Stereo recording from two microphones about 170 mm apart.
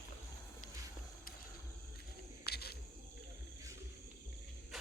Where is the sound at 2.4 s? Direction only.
70° left (ahead or behind).